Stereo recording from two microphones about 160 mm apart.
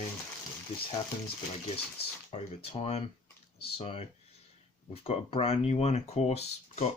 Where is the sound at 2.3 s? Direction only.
40° left (ahead or behind).